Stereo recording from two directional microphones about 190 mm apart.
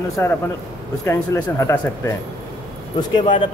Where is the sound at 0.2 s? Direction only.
15° left (ahead or behind).